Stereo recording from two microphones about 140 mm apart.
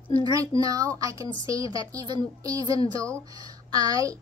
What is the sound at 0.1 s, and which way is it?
A woman's voice, 25° right (ahead or behind).